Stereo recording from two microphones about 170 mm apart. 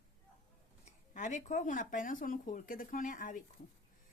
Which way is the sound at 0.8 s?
45° left (ahead or behind).